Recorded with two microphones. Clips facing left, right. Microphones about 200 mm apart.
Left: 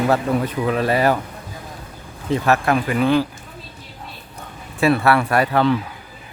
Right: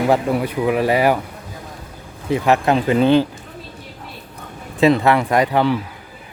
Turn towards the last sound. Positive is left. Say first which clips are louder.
# right 1 dB
turn(degrees=-15)  # may be behind; listen again after turning